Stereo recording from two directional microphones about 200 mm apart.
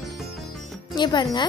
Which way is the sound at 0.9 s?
20° left (ahead or behind).